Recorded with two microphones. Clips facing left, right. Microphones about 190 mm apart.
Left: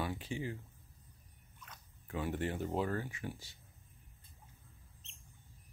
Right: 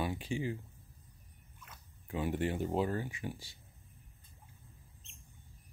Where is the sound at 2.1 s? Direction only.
15° right (ahead or behind).